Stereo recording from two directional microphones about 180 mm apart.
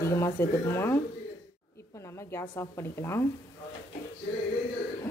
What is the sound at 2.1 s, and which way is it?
A woman's voice, 15° left (ahead or behind).